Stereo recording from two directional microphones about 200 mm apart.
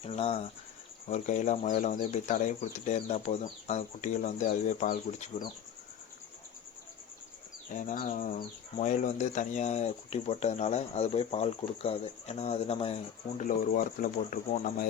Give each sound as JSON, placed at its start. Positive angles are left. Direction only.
{"t": 0.0, "sound": "speech", "side_deg": 30}
{"t": 7.7, "sound": "speech", "side_deg": 40}
{"t": 13.4, "sound": "speech", "side_deg": 40}